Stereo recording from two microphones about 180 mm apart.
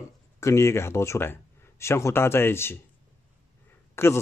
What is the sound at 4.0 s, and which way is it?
Speech, 15° left (ahead or behind).